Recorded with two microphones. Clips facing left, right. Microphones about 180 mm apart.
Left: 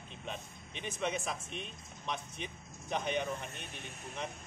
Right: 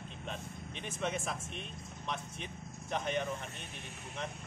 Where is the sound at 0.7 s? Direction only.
40° right (ahead or behind).